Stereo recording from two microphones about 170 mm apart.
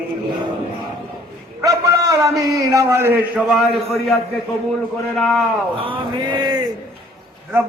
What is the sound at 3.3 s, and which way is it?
Speech, centre (ahead or behind).